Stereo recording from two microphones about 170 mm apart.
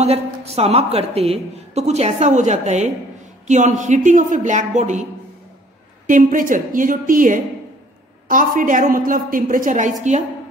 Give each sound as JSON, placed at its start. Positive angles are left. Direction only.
{"t": 0.0, "sound": "a woman's voice", "side_deg": -35}
{"t": 6.0, "sound": "a woman's voice", "side_deg": -50}